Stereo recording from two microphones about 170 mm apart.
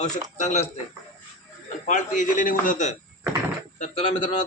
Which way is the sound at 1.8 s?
50° left (ahead or behind).